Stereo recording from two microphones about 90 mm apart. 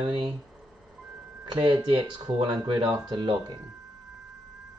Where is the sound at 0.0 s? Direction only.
70° right (ahead or behind).